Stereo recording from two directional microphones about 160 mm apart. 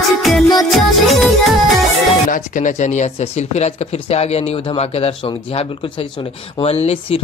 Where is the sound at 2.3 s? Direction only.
50° left (ahead or behind).